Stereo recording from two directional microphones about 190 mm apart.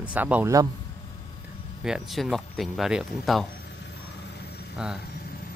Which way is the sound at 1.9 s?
Centre (ahead or behind).